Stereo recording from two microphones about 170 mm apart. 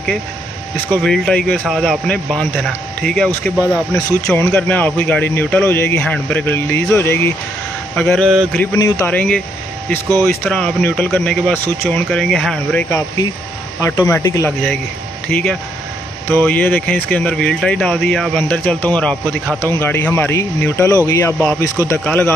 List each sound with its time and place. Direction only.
1.0 s speech: 5° left (ahead or behind)
4.3 s speech: 10° left (ahead or behind)
8.5 s speech: 20° left (ahead or behind); by 12.8 s centre (ahead or behind)
13.7 s speech: 15° left (ahead or behind)